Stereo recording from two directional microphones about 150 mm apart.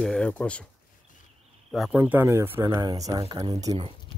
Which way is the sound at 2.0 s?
15° right (ahead or behind).